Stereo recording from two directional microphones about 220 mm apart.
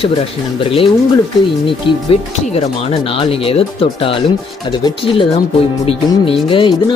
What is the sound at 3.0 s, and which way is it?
Speech, 25° left (ahead or behind).